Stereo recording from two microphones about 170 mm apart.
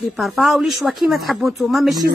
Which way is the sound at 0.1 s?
Centre (ahead or behind).